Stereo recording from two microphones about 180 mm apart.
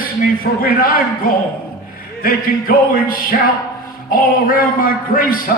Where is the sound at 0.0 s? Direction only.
55° left (ahead or behind).